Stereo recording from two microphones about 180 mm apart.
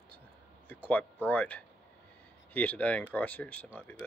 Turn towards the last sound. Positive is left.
turn(degrees=10)  # may be behind; listen again after turning